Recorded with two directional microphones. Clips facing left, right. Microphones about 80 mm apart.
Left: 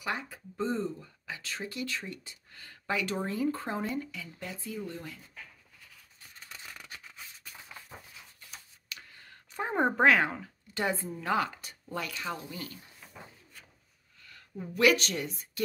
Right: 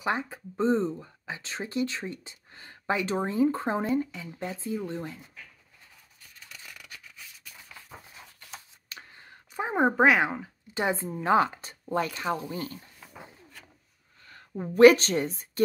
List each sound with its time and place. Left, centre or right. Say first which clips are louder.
0.0 s speech: right 6 dB; right
6.5 s scissors: left 1 dB; left
8.8 s a sound: right 2 dB; right
9.5 s speech: right 3 dB; centre; by 12.7 s right
14.2 s speech: right 6 dB; right